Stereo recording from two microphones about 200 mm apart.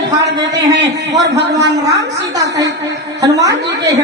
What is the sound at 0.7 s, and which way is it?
Speech, 60° right (ahead or behind).